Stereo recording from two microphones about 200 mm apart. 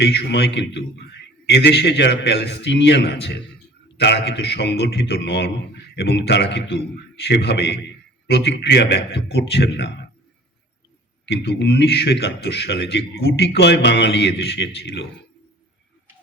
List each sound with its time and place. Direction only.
0.0 s a man's voice: 60° left (ahead or behind)
11.3 s a man's voice: 60° left (ahead or behind)